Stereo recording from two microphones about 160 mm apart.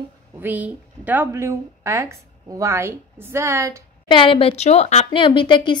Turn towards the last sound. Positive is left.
turn(degrees=30)  # may be behind; listen again after turning